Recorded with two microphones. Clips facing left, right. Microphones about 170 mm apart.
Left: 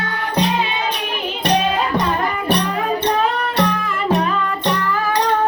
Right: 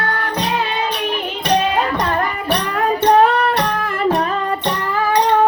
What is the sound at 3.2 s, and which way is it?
Music, 65° right (ahead or behind).